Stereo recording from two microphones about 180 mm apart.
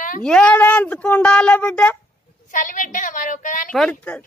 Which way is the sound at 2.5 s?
50° left (ahead or behind).